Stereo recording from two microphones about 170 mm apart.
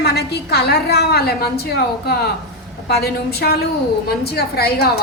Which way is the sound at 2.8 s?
70° left (ahead or behind).